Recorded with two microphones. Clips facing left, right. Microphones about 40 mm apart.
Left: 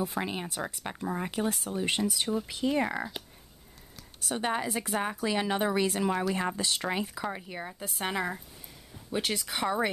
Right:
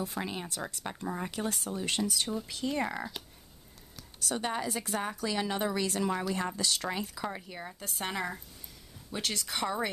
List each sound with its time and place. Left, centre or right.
0.0 s a woman's voice: centre